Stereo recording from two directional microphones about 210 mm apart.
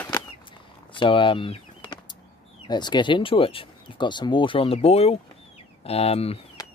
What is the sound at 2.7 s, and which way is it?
Speech, 20° left (ahead or behind).